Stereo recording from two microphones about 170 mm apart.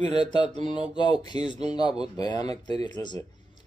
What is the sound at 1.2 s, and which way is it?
A man's voice, 25° left (ahead or behind).